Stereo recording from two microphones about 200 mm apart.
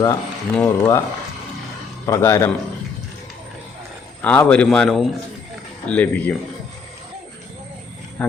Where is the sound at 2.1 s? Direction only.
15° left (ahead or behind).